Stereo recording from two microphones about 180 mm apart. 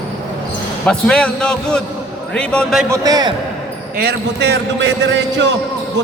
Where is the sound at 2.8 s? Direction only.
20° right (ahead or behind).